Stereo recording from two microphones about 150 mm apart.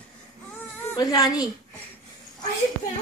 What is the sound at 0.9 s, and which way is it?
Speech, 25° left (ahead or behind).